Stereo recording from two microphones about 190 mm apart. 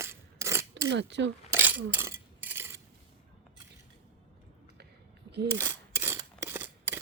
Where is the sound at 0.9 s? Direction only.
70° right (ahead or behind).